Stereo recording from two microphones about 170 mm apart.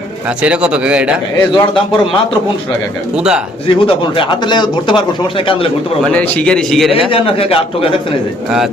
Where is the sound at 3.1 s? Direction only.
5° right (ahead or behind).